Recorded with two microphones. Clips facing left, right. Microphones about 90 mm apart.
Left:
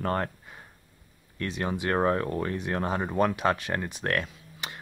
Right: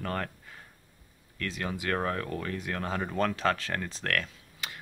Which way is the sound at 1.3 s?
25° left (ahead or behind).